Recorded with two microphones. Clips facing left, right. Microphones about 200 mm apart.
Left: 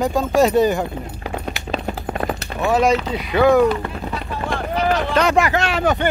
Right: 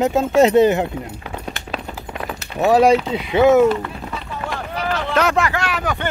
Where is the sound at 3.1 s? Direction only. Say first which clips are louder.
Right 1 dB; 20° right (ahead or behind).